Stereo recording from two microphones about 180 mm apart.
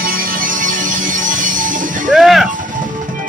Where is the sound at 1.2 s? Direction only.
45° right (ahead or behind).